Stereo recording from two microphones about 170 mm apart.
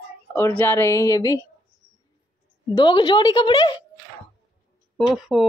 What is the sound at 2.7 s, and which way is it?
Speech, 30° left (ahead or behind).